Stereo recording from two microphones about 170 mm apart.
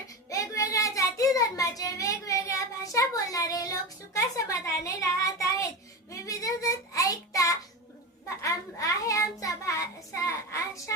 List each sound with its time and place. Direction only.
0.3 s child singing: 20° left (ahead or behind)
8.4 s a child's voice: 20° left (ahead or behind)